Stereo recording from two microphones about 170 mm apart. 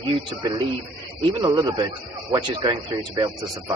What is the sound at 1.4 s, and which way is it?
A man's voice, 25° right (ahead or behind).